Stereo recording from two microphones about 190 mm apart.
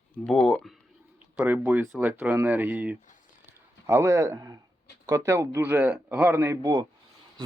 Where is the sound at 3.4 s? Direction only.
15° right (ahead or behind).